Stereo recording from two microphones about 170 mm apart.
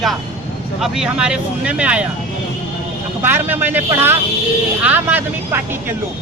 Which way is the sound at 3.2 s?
10° right (ahead or behind).